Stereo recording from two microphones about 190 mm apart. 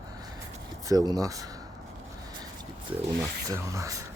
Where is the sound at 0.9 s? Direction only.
20° right (ahead or behind).